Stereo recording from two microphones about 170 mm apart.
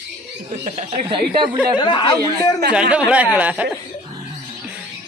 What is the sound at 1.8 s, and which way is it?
Speech, 30° left (ahead or behind).